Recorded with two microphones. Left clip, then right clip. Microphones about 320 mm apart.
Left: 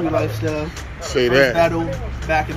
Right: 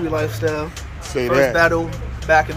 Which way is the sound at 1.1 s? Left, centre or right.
Centre.